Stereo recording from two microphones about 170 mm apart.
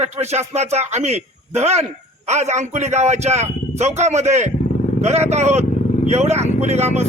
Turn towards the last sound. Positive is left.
turn(degrees=-40)  # may be behind; listen again after turning